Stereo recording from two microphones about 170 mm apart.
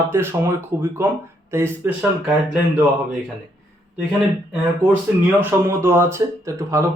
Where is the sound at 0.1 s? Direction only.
15° right (ahead or behind).